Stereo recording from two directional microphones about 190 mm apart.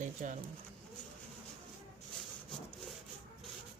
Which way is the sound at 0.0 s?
40° right (ahead or behind).